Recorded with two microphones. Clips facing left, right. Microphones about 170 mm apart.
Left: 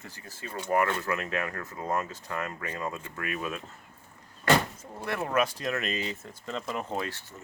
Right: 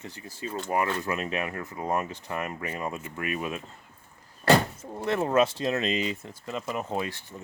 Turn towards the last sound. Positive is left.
turn(degrees=-15)  # may be behind; listen again after turning